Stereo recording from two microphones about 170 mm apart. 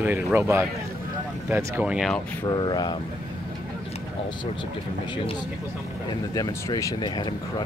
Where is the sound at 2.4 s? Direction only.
25° left (ahead or behind).